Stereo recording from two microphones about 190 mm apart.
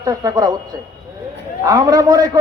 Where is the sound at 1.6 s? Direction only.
20° right (ahead or behind).